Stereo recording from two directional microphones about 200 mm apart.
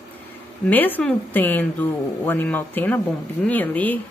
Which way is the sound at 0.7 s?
10° left (ahead or behind).